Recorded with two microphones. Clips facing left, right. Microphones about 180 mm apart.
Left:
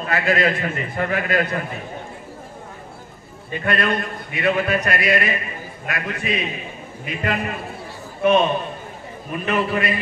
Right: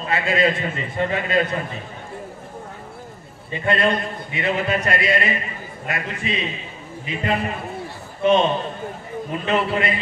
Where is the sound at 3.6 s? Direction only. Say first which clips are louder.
Right 2 dB; 25° right (ahead or behind).